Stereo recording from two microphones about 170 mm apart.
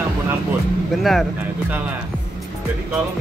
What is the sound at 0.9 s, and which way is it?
Speech, centre (ahead or behind).